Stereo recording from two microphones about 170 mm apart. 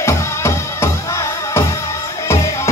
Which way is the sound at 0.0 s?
15° left (ahead or behind).